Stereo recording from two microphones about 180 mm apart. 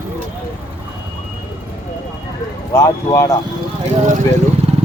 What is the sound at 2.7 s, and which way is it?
Speech, 15° left (ahead or behind).